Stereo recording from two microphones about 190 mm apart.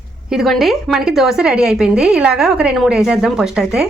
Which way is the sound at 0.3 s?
Centre (ahead or behind).